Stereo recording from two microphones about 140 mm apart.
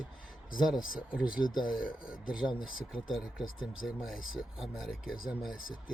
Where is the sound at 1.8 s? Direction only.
80° left.